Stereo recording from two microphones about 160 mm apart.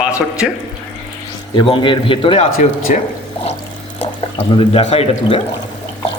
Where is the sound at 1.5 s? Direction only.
30° left (ahead or behind).